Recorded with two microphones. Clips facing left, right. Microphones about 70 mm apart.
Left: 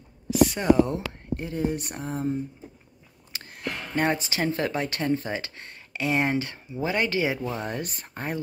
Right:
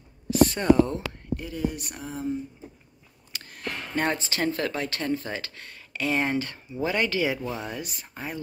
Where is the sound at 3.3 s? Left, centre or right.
Left.